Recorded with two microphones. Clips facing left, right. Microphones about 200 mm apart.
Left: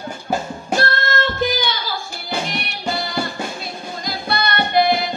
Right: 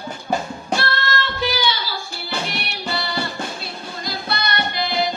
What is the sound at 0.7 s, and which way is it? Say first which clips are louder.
Music: left 3 dB; 50° left (ahead or behind).